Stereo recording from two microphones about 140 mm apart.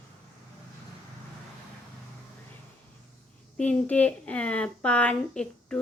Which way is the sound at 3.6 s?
10° left (ahead or behind).